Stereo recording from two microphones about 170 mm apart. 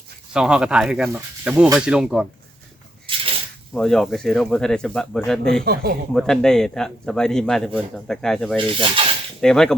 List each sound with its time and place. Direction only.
0.3 s a man's voice: 5° right (ahead or behind)
3.8 s a man's voice: 5° left (ahead or behind)
5.6 s speech: 65° right (ahead or behind)
6.1 s a man's voice: 5° left (ahead or behind)
8.5 s speech: 30° right (ahead or behind)
9.4 s a man's voice: 5° left (ahead or behind)